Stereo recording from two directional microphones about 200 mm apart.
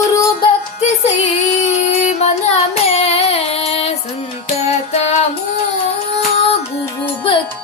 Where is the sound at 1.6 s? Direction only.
35° left (ahead or behind).